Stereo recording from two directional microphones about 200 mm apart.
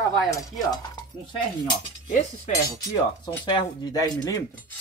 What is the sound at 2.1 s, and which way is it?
Speech, 40° left (ahead or behind).